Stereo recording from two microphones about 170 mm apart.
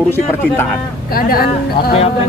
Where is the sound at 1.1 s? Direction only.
60° left (ahead or behind).